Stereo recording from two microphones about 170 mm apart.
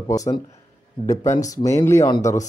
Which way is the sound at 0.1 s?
20° left (ahead or behind).